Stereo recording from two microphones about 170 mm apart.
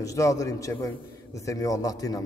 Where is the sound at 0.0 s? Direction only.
20° left (ahead or behind).